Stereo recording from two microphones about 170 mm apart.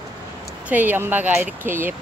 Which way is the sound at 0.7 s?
10° right (ahead or behind).